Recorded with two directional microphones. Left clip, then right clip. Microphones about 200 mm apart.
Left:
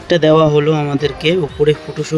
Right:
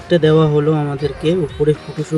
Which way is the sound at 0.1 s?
40° left (ahead or behind).